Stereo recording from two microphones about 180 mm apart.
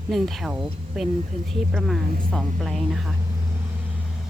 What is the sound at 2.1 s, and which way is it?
Speech, 50° right (ahead or behind).